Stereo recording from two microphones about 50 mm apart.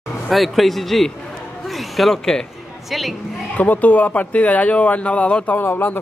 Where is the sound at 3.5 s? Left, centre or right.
Left.